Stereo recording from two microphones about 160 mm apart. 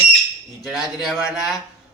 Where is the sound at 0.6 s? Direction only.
Centre (ahead or behind).